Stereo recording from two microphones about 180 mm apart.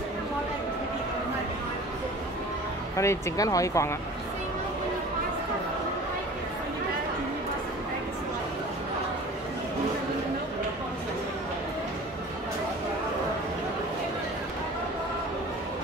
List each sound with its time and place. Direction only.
3.0 s speech: 15° left (ahead or behind)